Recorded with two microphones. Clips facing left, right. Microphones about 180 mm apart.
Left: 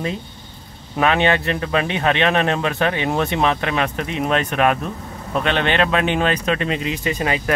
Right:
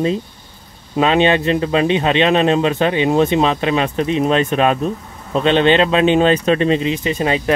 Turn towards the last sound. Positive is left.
turn(degrees=-25)  # may be behind; listen again after turning